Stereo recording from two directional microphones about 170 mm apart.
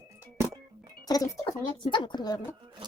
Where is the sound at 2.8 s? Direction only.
25° right (ahead or behind).